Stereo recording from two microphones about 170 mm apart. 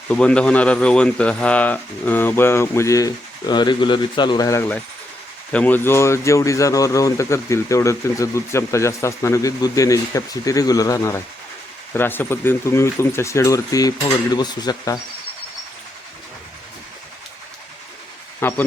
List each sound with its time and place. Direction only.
0.1 s speech: 5° left (ahead or behind)
5.5 s speech: 10° left (ahead or behind); by 14.9 s 25° left (ahead or behind)
18.3 s speech: 10° left (ahead or behind)